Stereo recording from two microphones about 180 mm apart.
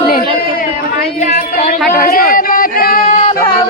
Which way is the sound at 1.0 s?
40° left (ahead or behind).